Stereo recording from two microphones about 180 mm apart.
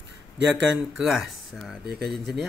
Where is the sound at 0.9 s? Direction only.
Centre (ahead or behind).